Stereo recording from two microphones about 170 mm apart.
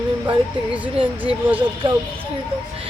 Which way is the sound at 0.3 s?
30° right (ahead or behind).